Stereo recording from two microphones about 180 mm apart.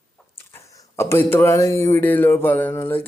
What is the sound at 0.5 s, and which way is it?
Speech, 15° left (ahead or behind).